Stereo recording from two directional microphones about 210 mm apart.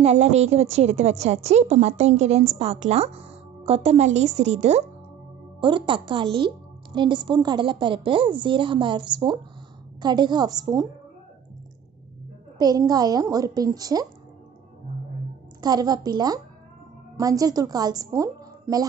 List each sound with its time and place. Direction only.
0.0 s a woman's voice: 30° right (ahead or behind)
12.5 s a woman's voice: 20° right (ahead or behind)
15.6 s a woman's voice: 20° right (ahead or behind)